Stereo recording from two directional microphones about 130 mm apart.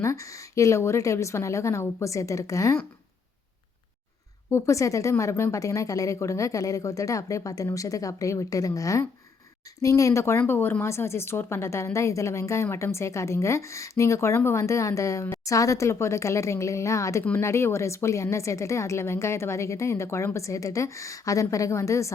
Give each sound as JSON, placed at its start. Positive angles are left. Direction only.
{"t": 0.0, "sound": "a woman's voice", "side_deg": 25}
{"t": 4.5, "sound": "a woman's voice", "side_deg": 25}